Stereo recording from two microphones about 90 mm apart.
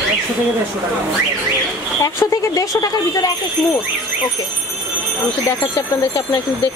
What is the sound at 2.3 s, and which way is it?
Speech, 40° left (ahead or behind).